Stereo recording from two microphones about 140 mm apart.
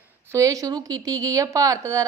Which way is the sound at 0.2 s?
20° right (ahead or behind).